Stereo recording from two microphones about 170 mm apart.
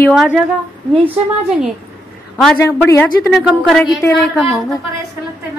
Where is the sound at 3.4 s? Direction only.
Centre (ahead or behind).